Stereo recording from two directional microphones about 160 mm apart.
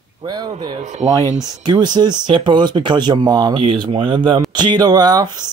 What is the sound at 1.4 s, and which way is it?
Speech, 30° right (ahead or behind).